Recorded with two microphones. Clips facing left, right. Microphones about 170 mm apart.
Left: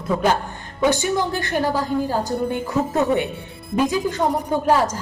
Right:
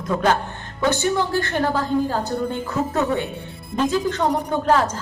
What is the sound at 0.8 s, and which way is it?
A woman's voice, 15° left (ahead or behind).